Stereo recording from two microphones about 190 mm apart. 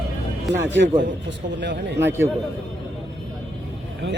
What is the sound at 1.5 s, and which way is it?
Speech, 65° right (ahead or behind).